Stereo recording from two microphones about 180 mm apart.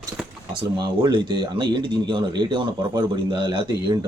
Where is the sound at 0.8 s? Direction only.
25° right (ahead or behind).